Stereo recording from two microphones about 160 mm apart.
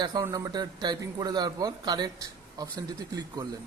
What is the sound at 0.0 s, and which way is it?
A man's voice, 25° right (ahead or behind).